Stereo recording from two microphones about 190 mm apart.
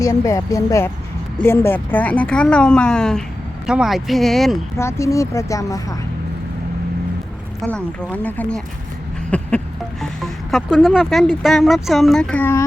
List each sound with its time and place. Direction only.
0.0 s speech: 15° left (ahead or behind); by 4.5 s centre (ahead or behind)
4.8 s speech: 15° left (ahead or behind)
7.6 s speech: 5° left (ahead or behind)
9.3 s a sound: 10° left (ahead or behind)
10.0 s speech: centre (ahead or behind)